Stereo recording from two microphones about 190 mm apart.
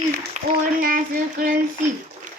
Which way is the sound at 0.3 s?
45° right (ahead or behind).